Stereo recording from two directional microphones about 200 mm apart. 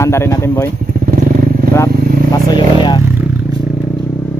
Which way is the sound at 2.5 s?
20° left (ahead or behind).